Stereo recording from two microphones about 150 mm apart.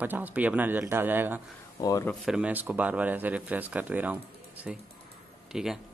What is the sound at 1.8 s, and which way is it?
Speech, 20° left (ahead or behind).